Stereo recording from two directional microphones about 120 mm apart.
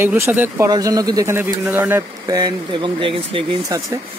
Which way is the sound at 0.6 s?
30° right (ahead or behind).